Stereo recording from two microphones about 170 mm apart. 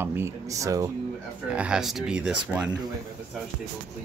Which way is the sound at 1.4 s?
5° right (ahead or behind).